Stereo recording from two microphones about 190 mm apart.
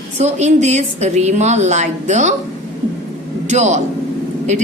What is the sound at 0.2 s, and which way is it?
A woman's voice, 35° right (ahead or behind).